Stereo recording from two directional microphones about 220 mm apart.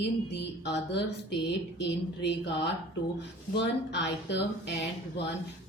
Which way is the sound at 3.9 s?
50° left (ahead or behind).